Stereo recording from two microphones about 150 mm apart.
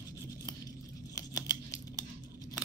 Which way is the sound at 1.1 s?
25° left (ahead or behind).